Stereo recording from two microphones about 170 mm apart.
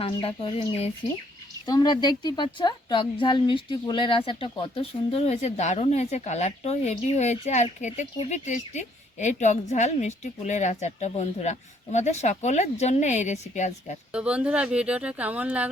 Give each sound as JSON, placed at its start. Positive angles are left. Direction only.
{"t": 0.0, "sound": "a woman's voice", "side_deg": 30}
{"t": 1.6, "sound": "a woman's voice", "side_deg": 25}
{"t": 14.1, "sound": "speech", "side_deg": -5}